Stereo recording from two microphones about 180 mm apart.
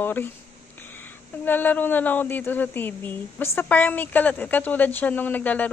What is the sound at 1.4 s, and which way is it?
Speech, 10° left (ahead or behind).